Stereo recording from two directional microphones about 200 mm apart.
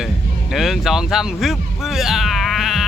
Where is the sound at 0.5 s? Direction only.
Centre (ahead or behind).